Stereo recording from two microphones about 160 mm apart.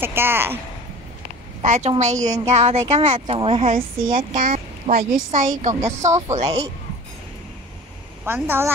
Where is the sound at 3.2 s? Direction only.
35° right (ahead or behind).